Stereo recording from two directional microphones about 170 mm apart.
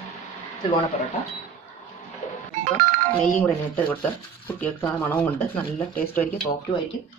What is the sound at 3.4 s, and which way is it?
Speech, 10° left (ahead or behind).